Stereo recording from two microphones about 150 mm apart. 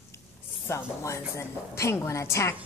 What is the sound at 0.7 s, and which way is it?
A woman's voice, 20° left (ahead or behind).